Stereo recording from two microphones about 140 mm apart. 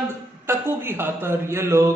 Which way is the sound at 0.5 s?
15° right (ahead or behind).